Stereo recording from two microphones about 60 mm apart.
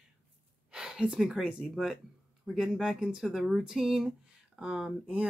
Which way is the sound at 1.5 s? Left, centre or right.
Centre.